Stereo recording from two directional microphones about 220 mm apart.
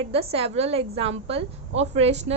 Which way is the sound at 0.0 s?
25° right (ahead or behind).